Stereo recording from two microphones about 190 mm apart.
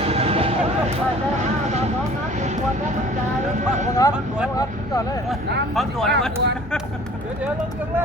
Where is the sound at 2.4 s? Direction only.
40° right (ahead or behind).